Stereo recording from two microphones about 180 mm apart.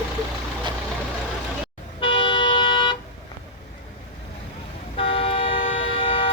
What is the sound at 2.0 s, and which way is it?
Toot, 30° left (ahead or behind).